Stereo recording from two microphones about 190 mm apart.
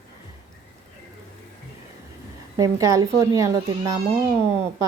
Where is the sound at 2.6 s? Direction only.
15° right (ahead or behind).